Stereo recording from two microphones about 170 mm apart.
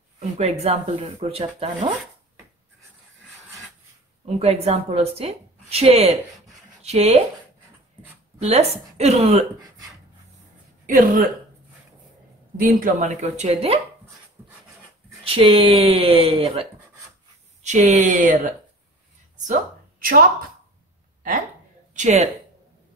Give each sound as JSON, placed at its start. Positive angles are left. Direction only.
{"t": 0.4, "sound": "a woman's voice", "side_deg": -40}
{"t": 4.4, "sound": "a woman's voice", "side_deg": -35}
{"t": 8.4, "sound": "a woman's voice", "side_deg": -40}
{"t": 10.9, "sound": "speech", "side_deg": -55}
{"t": 12.5, "sound": "speech", "side_deg": -55}
{"t": 14.4, "sound": "dog", "side_deg": -10}
{"t": 15.2, "sound": "a woman's voice", "side_deg": -35}
{"t": 17.6, "sound": "speech", "side_deg": -45}
{"t": 19.3, "sound": "a sound", "side_deg": -45}
{"t": 21.9, "sound": "speech", "side_deg": -45}